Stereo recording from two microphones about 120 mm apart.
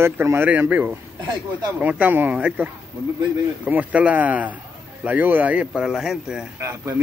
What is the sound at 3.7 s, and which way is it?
Speech, 15° right (ahead or behind).